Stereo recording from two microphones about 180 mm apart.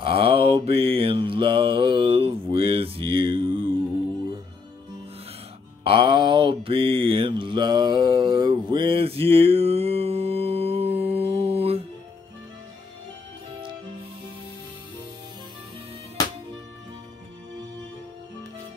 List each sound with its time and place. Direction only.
0.0 s mantra: 30° right (ahead or behind)
5.9 s mantra: 25° right (ahead or behind)